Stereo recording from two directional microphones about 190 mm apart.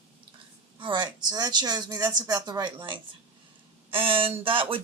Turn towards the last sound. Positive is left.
turn(degrees=-30)  # may be behind; listen again after turning